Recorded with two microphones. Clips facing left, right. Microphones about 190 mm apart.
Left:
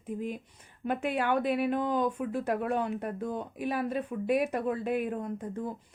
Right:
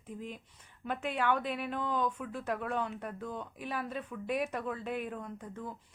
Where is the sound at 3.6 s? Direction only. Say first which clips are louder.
Left 8 dB; 10° left (ahead or behind).